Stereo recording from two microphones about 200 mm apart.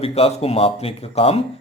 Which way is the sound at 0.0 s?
30° left (ahead or behind).